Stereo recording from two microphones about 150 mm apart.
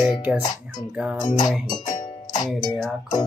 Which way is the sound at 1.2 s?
50° left (ahead or behind).